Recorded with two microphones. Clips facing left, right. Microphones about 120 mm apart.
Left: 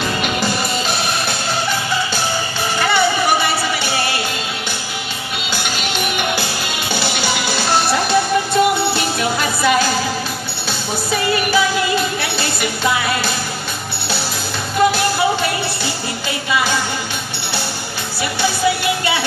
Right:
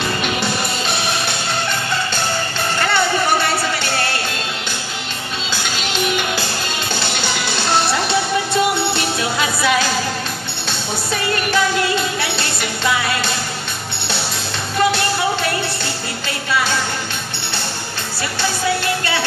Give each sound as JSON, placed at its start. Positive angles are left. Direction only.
{"t": 0.2, "sound": "music", "side_deg": 0}
{"t": 2.8, "sound": "a sound", "side_deg": 10}
{"t": 5.5, "sound": "music", "side_deg": 10}
{"t": 5.9, "sound": "music", "side_deg": 55}
{"t": 7.0, "sound": "music", "side_deg": 5}
{"t": 11.1, "sound": "music", "side_deg": 5}
{"t": 14.8, "sound": "music", "side_deg": 5}